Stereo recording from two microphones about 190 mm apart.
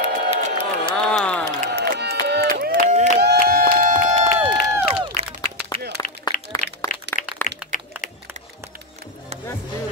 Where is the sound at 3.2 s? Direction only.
60° right (ahead or behind).